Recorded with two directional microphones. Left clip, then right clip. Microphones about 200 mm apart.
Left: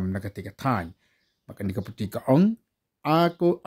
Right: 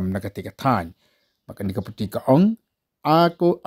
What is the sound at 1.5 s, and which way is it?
Speech, 10° right (ahead or behind).